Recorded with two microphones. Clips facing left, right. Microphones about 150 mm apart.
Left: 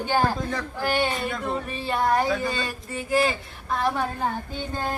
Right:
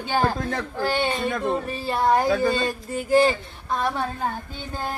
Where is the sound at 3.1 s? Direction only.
30° right (ahead or behind).